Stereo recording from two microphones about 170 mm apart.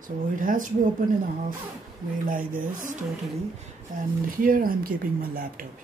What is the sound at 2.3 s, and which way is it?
Speech, 55° right (ahead or behind).